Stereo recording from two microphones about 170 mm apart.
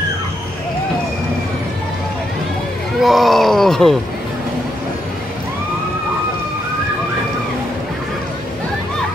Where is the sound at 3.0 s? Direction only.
Centre (ahead or behind).